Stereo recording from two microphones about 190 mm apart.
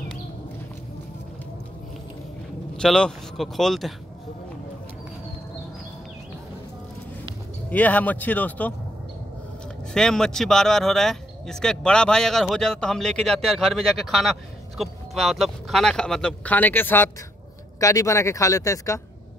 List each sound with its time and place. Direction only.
2.8 s speech: centre (ahead or behind)
7.7 s speech: 10° left (ahead or behind)
9.9 s speech: 5° left (ahead or behind)